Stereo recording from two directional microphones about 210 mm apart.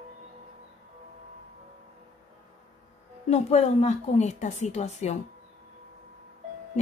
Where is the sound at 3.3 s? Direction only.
30° left (ahead or behind).